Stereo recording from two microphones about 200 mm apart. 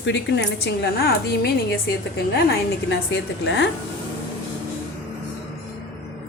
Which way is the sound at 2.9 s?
65° left (ahead or behind).